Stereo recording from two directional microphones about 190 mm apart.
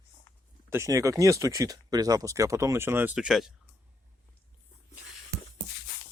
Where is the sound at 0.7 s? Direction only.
15° right (ahead or behind).